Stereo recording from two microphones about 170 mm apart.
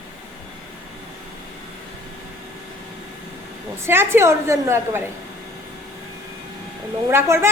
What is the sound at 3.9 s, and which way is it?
A woman's voice, 15° right (ahead or behind).